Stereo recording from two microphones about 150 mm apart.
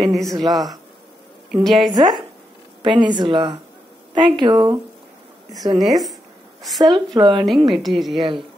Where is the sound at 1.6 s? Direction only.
Centre (ahead or behind).